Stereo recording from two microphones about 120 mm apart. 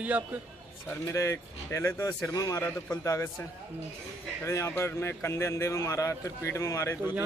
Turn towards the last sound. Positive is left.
turn(degrees=25)  # may be behind; listen again after turning